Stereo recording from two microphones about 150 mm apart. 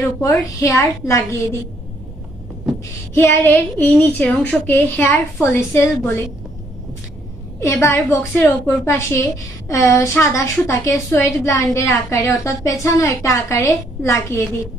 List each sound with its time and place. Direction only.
0.2 s a woman's voice: 20° left (ahead or behind)
3.2 s a woman's voice: 15° left (ahead or behind)
7.6 s a woman's voice: 15° left (ahead or behind)